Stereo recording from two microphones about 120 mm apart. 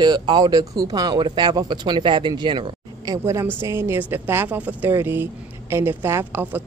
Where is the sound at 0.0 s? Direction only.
35° right (ahead or behind).